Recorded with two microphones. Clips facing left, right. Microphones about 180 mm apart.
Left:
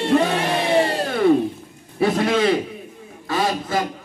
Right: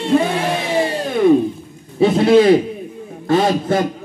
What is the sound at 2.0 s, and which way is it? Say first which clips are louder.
Speech: right 7 dB; 25° right (ahead or behind).